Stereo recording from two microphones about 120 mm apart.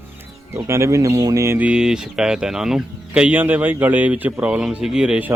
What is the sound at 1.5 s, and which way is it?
Speech, 10° right (ahead or behind).